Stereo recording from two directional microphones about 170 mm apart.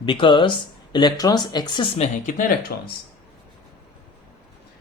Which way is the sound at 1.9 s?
40° left (ahead or behind).